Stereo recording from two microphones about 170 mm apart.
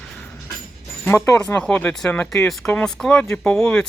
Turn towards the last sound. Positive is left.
turn(degrees=5)  # may be behind; listen again after turning